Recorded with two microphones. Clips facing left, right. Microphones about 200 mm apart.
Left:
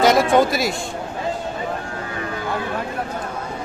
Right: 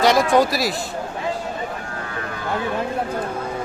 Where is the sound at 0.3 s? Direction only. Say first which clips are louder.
Left 1 dB; centre (ahead or behind).